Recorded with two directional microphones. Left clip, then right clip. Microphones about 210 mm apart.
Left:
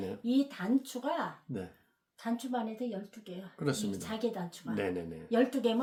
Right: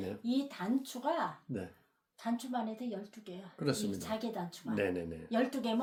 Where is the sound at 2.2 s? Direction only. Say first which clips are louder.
Left 2 dB; 20° left (ahead or behind).